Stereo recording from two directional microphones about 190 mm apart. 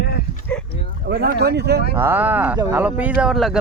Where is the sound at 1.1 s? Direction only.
55° right (ahead or behind).